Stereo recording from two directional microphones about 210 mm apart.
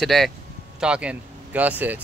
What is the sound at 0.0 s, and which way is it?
Speech, centre (ahead or behind).